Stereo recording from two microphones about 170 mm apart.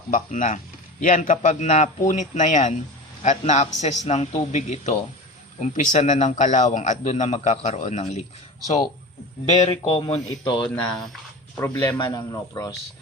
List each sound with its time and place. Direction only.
0.1 s speech: 50° left (ahead or behind)
9.6 s speech: 30° left (ahead or behind)
10.9 s speech: centre (ahead or behind)
11.6 s a man's voice: 15° left (ahead or behind)